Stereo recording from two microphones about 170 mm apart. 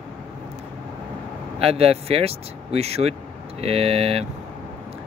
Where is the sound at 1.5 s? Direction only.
35° right (ahead or behind).